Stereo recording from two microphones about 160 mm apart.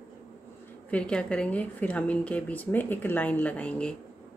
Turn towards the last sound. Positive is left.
turn(degrees=5)  # may be behind; listen again after turning